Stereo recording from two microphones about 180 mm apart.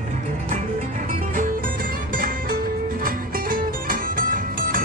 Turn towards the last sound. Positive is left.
turn(degrees=-50)  # may be behind; listen again after turning